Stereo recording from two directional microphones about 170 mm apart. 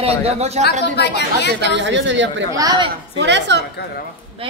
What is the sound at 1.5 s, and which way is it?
Speech, 90° right.